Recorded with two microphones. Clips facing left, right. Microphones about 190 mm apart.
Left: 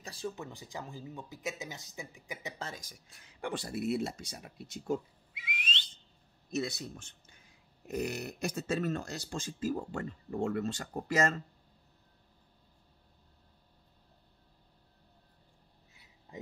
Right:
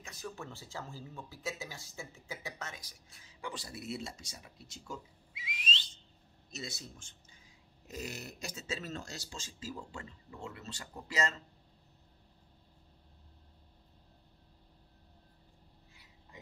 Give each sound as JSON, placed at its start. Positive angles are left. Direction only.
{"t": 0.0, "sound": "a sound", "side_deg": 30}
{"t": 0.4, "sound": "speech", "side_deg": 15}
{"t": 2.6, "sound": "speech", "side_deg": 40}
{"t": 2.9, "sound": "speech", "side_deg": 60}